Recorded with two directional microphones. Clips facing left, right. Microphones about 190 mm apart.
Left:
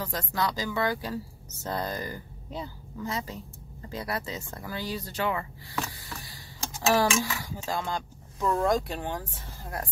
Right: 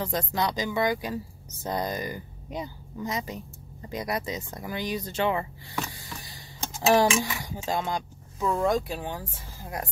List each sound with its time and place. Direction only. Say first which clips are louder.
0.0 s speech: right 2 dB; 20° right (ahead or behind)
6.9 s speech: right 3 dB; 25° right (ahead or behind)
8.4 s speech: even; centre (ahead or behind)